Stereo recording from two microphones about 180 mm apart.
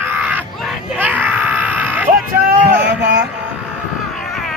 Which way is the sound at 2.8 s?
75° right (ahead or behind).